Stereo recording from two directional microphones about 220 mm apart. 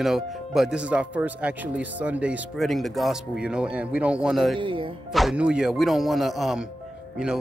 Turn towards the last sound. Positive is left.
turn(degrees=-5)  # may be behind; listen again after turning